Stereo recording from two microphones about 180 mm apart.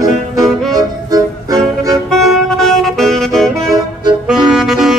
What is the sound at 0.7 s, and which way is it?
Music, 20° right (ahead or behind).